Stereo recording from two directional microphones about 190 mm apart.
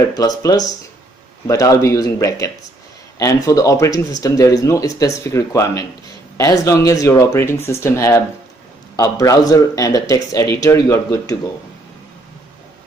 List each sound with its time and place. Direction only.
0.4 s speech: 20° left (ahead or behind)